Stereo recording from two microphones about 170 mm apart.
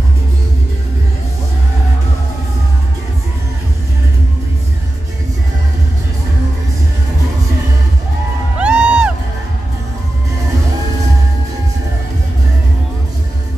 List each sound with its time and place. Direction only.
8.5 s music: 5° right (ahead or behind)